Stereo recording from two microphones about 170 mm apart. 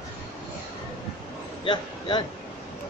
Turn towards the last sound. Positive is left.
turn(degrees=30)  # may be behind; listen again after turning